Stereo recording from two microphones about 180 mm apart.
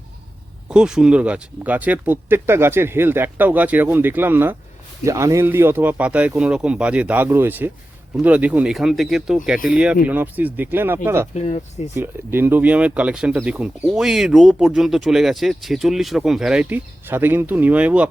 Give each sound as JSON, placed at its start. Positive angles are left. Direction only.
{"t": 0.7, "sound": "speech", "side_deg": -5}
{"t": 11.3, "sound": "speech", "side_deg": 40}
{"t": 11.9, "sound": "speech", "side_deg": -10}